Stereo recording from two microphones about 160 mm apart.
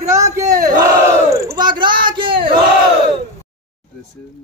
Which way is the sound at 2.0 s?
30° right (ahead or behind).